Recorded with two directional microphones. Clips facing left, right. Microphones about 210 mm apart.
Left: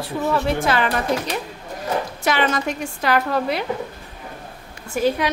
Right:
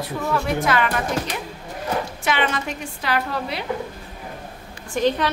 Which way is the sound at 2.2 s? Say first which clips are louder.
Left 5 dB; 40° left (ahead or behind).